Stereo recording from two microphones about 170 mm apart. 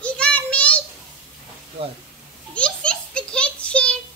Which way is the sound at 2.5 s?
5° left (ahead or behind).